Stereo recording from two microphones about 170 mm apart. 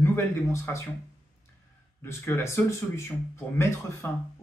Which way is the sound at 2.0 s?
15° left (ahead or behind).